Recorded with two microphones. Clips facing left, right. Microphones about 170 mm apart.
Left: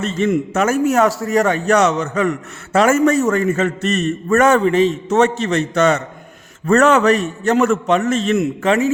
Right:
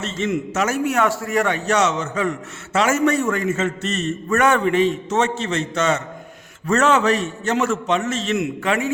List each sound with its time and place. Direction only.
0.0 s a man's voice: 55° left (ahead or behind)
4.4 s a man's voice: 40° left (ahead or behind)
5.0 s a man's voice: 60° left (ahead or behind); by 8.9 s 40° left (ahead or behind)